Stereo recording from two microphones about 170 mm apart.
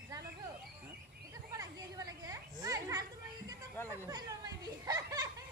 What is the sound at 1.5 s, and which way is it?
Children playing, 20° right (ahead or behind).